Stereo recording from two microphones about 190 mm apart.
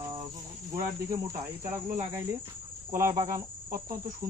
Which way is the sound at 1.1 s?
15° right (ahead or behind).